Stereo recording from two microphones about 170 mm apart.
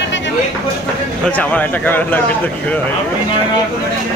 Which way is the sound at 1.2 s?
10° left (ahead or behind).